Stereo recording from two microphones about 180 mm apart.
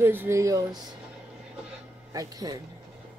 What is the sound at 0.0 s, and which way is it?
Speech, 10° right (ahead or behind).